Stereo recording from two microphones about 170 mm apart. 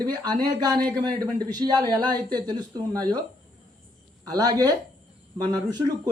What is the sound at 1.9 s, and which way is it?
Speech, 25° right (ahead or behind).